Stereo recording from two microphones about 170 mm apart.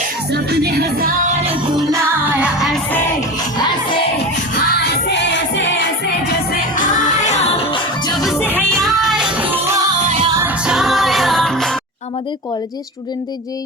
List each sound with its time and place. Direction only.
0.3 s music: 70° right (ahead or behind)
1.9 s music: 10° right (ahead or behind)
2.9 s music: 20° left (ahead or behind)
4.5 s music: 75° left (ahead or behind)
6.5 s music: 50° left (ahead or behind); by 8.2 s 25° left (ahead or behind)
8.4 s music: 10° left (ahead or behind)
8.9 s music: centre (ahead or behind)
10.1 s music: 40° right (ahead or behind)
10.7 s music: centre (ahead or behind)